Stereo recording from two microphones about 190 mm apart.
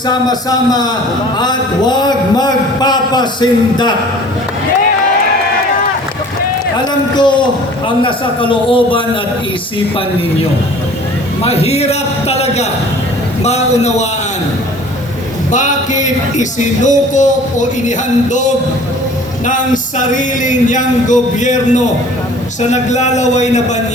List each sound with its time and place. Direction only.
0.1 s a man's voice: 20° left (ahead or behind)
7.2 s a man's voice: 25° left (ahead or behind)
11.4 s music: 35° left (ahead or behind)
15.5 s music: 40° left (ahead or behind)